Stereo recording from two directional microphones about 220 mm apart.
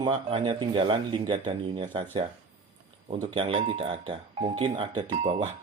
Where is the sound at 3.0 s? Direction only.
25° right (ahead or behind).